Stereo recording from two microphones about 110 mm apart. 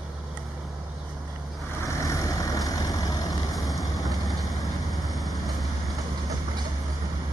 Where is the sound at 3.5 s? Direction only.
Centre (ahead or behind).